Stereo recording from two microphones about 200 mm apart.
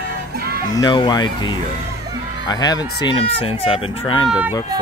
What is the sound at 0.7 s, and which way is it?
Speech, 20° left (ahead or behind).